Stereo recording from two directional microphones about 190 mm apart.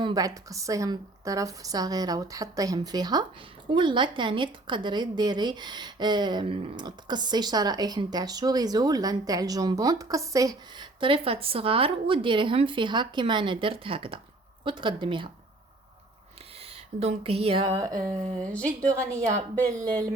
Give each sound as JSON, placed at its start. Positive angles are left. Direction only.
{"t": 0.0, "sound": "a woman's voice", "side_deg": -20}
{"t": 16.6, "sound": "speech", "side_deg": -30}
{"t": 18.5, "sound": "a woman's voice", "side_deg": 5}
{"t": 18.9, "sound": "a woman's voice", "side_deg": -15}